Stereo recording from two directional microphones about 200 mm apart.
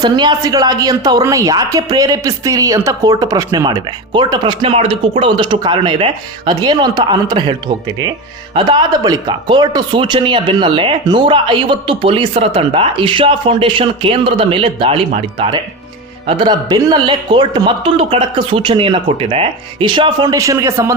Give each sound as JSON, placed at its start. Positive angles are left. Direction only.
{"t": 0.0, "sound": "a woman's voice", "side_deg": -20}